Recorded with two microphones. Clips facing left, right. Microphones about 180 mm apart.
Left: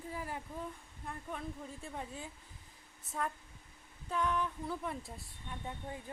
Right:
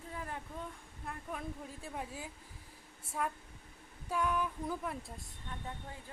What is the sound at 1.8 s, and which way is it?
A woman's voice, 5° right (ahead or behind).